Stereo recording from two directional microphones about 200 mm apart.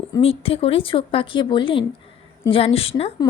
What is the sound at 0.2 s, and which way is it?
A woman's voice, 30° left (ahead or behind).